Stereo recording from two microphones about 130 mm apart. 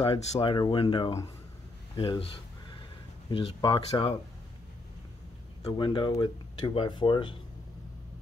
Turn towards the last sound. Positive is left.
turn(degrees=40)  # may be behind; listen again after turning